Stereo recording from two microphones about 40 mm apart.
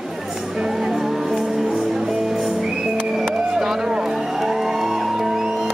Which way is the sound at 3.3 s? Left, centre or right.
Centre.